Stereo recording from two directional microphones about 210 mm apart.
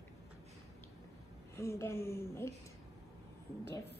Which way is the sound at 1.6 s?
15° left (ahead or behind).